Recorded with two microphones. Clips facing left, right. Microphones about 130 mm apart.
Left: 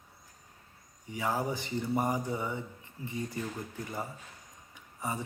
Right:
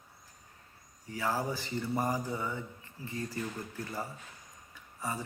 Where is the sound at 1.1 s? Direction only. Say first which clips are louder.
Left 1 dB; 20° left (ahead or behind).